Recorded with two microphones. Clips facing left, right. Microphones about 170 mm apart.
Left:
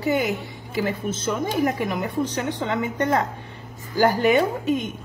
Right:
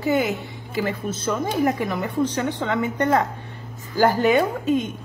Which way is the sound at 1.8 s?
20° left (ahead or behind).